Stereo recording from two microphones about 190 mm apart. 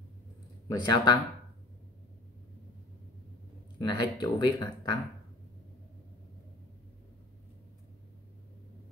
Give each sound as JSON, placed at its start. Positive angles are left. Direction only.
{"t": 0.7, "sound": "speech", "side_deg": 20}
{"t": 3.8, "sound": "speech", "side_deg": 20}